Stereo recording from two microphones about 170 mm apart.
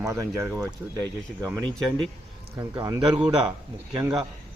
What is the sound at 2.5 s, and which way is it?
Speech, 20° right (ahead or behind).